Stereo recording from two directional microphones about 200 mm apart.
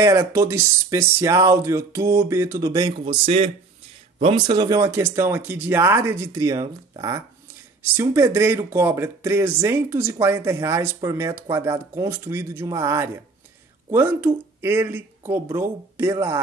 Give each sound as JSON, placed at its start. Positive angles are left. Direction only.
{"t": 0.0, "sound": "speech", "side_deg": -15}
{"t": 4.2, "sound": "speech", "side_deg": -25}